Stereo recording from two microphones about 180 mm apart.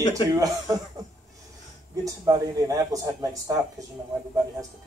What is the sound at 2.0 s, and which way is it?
Speech, 20° right (ahead or behind).